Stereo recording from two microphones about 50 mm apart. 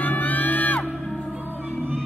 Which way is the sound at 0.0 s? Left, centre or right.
Left.